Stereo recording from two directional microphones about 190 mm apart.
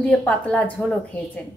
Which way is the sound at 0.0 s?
5° left (ahead or behind).